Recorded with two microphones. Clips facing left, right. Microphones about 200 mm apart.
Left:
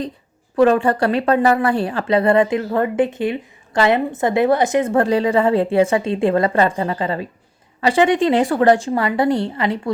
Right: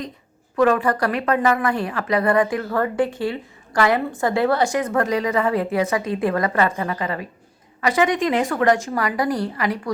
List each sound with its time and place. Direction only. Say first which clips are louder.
0.5 s a woman's voice: left 4 dB; 30° left (ahead or behind)